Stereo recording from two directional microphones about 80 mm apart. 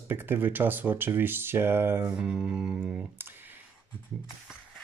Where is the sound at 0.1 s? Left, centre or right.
Right.